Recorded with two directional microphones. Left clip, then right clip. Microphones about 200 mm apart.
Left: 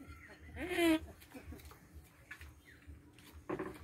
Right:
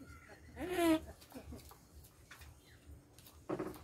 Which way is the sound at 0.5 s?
15° left (ahead or behind).